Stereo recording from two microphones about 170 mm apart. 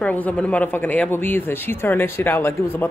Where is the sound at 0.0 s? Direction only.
10° left (ahead or behind).